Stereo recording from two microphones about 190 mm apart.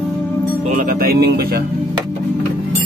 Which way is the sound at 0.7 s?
45° right (ahead or behind).